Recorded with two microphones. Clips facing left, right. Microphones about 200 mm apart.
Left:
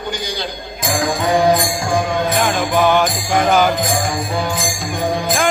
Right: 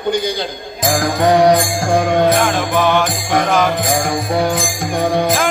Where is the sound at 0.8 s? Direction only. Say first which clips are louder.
Right 4 dB; 60° right (ahead or behind).